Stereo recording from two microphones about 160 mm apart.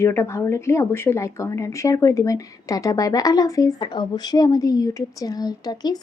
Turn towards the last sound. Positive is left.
turn(degrees=25)  # may be behind; listen again after turning